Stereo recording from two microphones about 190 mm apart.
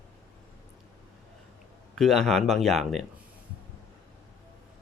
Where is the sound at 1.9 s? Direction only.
Centre (ahead or behind).